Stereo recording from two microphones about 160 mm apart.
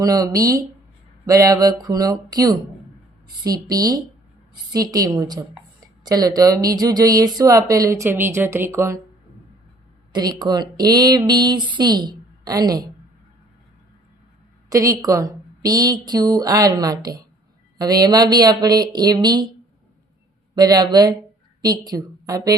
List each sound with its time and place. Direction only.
0.0 s a woman's voice: 20° right (ahead or behind)
10.1 s a woman's voice: 25° right (ahead or behind)
14.7 s a woman's voice: 20° right (ahead or behind)
20.6 s a woman's voice: 25° right (ahead or behind)